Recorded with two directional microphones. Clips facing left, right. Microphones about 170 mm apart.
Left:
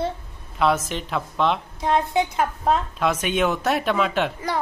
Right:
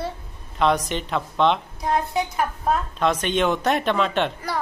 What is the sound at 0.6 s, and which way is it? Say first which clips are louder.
Speech: even; 5° left (ahead or behind).